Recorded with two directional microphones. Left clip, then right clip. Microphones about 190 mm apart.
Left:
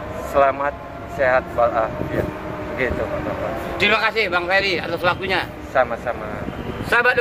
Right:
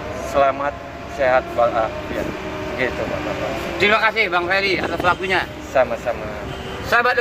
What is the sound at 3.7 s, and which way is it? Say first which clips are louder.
Speech: right 2 dB; 55° left (ahead or behind).